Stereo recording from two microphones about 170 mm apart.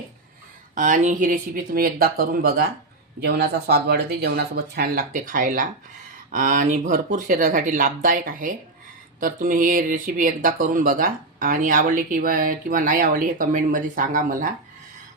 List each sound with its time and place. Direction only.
0.8 s speech: 50° right (ahead or behind)